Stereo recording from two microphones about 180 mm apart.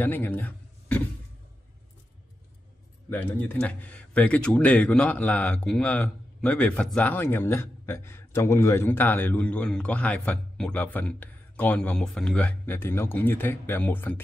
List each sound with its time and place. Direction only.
0.0 s a man's voice: 10° left (ahead or behind)
3.1 s a man's voice: 10° left (ahead or behind)